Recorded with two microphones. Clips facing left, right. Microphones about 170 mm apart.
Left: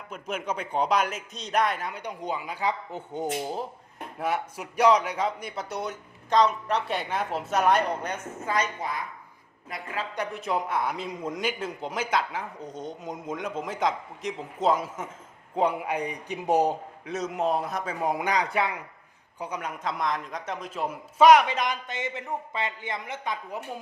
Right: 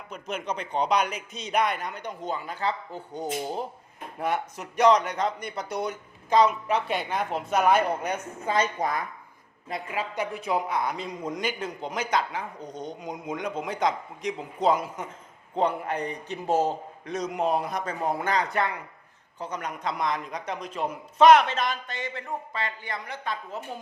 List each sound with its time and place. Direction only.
0.1 s a man's voice: 5° left (ahead or behind)
8.4 s a woman's voice: 30° right (ahead or behind)
8.8 s a woman's voice: 45° right (ahead or behind)
9.9 s speech: 10° right (ahead or behind)
10.3 s a man's voice: centre (ahead or behind); by 17.2 s 15° left (ahead or behind)
17.2 s a man's voice: 5° left (ahead or behind)